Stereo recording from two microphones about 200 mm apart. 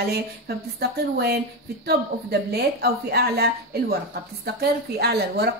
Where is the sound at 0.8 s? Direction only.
55° right (ahead or behind).